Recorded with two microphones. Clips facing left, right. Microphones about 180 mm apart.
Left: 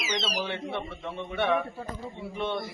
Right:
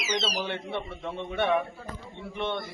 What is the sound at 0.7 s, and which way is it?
Speech, 15° right (ahead or behind).